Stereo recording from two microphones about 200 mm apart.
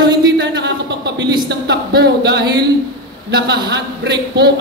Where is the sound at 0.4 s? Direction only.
60° right (ahead or behind).